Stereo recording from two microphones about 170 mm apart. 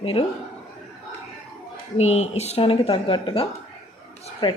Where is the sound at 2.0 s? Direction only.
40° left (ahead or behind).